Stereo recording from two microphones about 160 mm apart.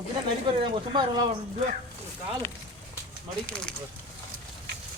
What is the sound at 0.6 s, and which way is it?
Speech, 30° right (ahead or behind).